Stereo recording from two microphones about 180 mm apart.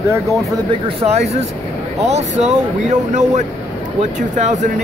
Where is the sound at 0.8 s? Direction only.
35° right (ahead or behind).